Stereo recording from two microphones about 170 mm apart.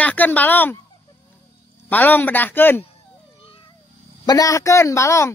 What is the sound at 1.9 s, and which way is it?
Speech, 10° left (ahead or behind).